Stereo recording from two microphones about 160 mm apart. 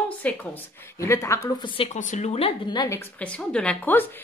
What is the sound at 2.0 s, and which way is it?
A woman's voice, 45° left (ahead or behind).